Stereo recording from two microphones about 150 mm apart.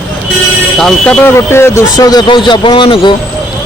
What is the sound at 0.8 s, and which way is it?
A man's voice, 5° left (ahead or behind).